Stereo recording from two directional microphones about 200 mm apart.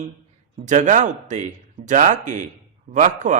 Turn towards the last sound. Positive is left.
turn(degrees=-35)  # may be behind; listen again after turning